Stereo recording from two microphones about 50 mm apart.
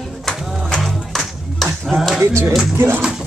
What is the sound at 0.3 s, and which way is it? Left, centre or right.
Music, centre.